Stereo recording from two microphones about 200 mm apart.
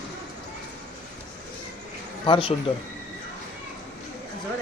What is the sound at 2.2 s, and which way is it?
Speech, 25° left (ahead or behind).